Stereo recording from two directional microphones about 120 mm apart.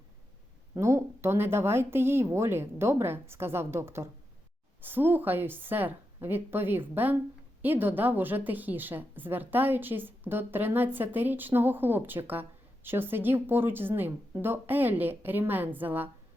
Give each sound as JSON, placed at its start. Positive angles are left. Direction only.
{"t": 0.7, "sound": "speech", "side_deg": -20}